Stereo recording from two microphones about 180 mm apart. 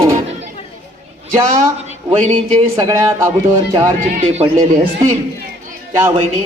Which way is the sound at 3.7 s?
30° right (ahead or behind).